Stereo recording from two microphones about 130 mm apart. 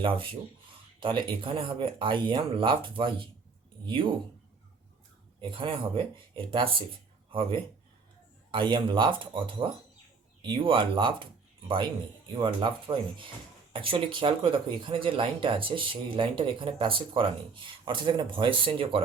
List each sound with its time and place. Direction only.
0.0 s speech: 40° right (ahead or behind)
5.4 s speech: 40° right (ahead or behind)
8.4 s speech: 40° right (ahead or behind)
12.4 s speech: 40° right (ahead or behind)